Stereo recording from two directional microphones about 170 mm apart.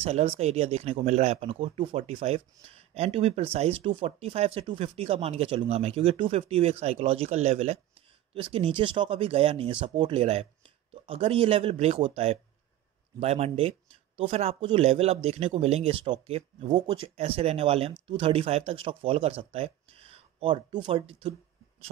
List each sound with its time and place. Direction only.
0.0 s speech: 35° right (ahead or behind)
13.2 s speech: 40° right (ahead or behind)